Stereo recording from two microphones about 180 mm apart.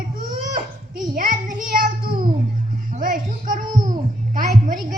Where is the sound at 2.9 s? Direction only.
50° right (ahead or behind).